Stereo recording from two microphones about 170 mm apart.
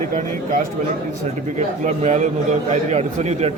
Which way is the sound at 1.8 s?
40° right (ahead or behind).